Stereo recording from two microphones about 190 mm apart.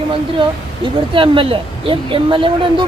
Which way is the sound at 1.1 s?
30° right (ahead or behind).